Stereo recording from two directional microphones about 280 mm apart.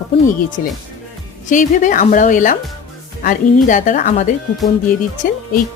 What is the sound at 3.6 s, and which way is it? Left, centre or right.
Speech, left.